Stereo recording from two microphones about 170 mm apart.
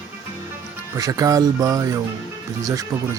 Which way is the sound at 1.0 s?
20° right (ahead or behind).